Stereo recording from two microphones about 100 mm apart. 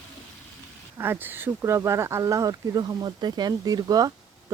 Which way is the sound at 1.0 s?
20° right (ahead or behind).